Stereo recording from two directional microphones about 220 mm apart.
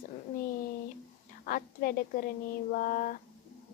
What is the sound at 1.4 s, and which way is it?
Speech, 40° left (ahead or behind).